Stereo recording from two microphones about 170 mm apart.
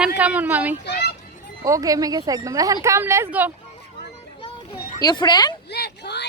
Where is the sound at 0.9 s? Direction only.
75° left (ahead or behind).